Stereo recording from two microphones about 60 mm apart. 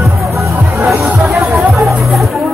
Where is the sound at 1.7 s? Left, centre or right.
Centre.